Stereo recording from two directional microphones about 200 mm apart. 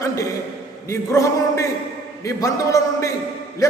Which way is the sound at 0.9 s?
15° left (ahead or behind).